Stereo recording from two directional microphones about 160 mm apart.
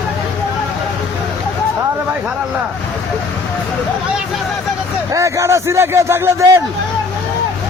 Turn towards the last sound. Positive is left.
turn(degrees=-15)  # may be behind; listen again after turning